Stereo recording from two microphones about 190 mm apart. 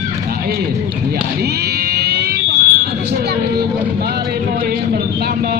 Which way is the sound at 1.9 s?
55° right (ahead or behind).